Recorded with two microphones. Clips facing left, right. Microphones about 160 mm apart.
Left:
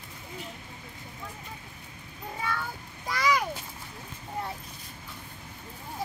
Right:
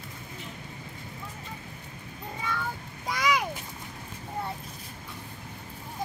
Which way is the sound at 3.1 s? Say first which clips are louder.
Even; 20° right (ahead or behind).